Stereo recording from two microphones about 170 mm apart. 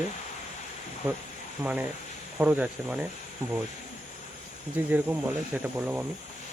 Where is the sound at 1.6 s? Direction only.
10° right (ahead or behind).